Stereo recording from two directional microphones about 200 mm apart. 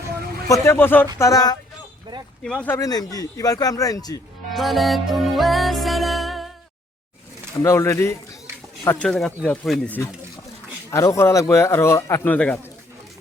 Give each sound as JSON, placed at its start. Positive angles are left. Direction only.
{"t": 0.4, "sound": "speech", "side_deg": 15}
{"t": 2.4, "sound": "speech", "side_deg": 5}
{"t": 4.4, "sound": "music", "side_deg": 0}
{"t": 7.6, "sound": "speech", "side_deg": 15}